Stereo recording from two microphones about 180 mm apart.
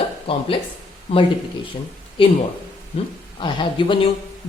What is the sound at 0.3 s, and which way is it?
Speech, 30° left (ahead or behind).